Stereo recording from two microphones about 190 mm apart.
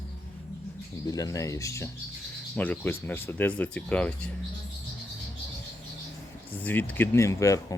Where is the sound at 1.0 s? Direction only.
20° left (ahead or behind).